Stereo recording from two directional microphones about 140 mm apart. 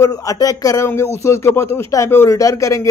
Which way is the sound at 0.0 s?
25° left (ahead or behind).